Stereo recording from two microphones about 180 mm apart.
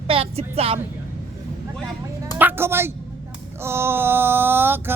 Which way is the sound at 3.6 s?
15° right (ahead or behind).